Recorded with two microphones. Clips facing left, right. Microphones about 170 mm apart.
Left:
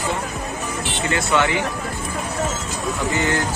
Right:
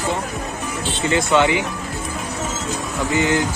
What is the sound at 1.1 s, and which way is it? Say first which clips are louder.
Speech: right 4 dB; 20° right (ahead or behind).